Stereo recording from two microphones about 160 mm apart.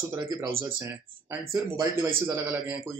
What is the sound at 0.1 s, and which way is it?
Speech, 20° right (ahead or behind).